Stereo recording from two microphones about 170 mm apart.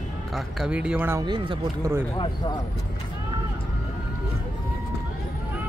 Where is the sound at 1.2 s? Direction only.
25° right (ahead or behind).